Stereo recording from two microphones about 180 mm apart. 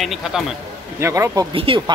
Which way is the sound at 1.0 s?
15° right (ahead or behind).